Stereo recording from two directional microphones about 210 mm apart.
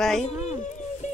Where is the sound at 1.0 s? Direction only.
35° left (ahead or behind).